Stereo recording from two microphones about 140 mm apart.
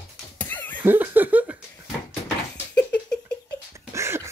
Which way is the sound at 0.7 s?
15° right (ahead or behind).